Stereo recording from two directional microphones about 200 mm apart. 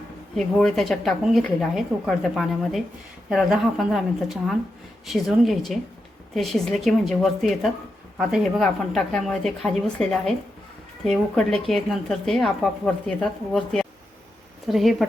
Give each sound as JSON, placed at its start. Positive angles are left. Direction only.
{"t": 0.3, "sound": "a woman's voice", "side_deg": 0}